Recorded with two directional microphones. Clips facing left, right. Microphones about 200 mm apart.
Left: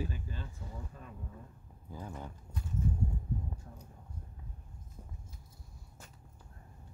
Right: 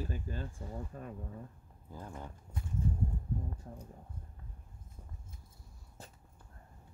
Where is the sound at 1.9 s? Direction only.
Centre (ahead or behind).